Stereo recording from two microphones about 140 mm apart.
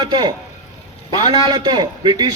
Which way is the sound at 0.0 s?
30° right (ahead or behind).